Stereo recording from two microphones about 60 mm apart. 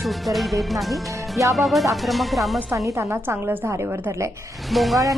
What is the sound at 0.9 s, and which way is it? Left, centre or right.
Speech, right.